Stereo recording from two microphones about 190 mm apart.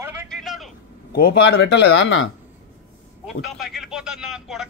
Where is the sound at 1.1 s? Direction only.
55° left (ahead or behind); by 2.3 s 75° left (ahead or behind).